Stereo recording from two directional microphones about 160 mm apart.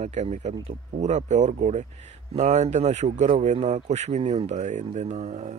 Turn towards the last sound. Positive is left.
turn(degrees=-45)  # may be behind; listen again after turning